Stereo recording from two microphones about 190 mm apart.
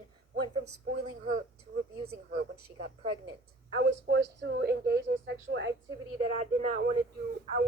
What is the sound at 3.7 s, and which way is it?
A woman's voice, 65° right (ahead or behind).